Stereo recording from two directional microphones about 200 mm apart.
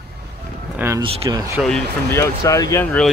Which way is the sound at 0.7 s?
15° right (ahead or behind).